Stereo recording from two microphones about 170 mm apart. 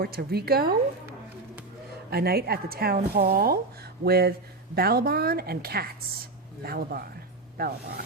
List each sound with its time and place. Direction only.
0.0 s speech: 65° right (ahead or behind)
2.0 s speech: 65° right (ahead or behind)